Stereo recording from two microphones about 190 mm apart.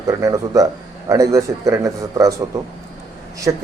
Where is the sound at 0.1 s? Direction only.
20° right (ahead or behind).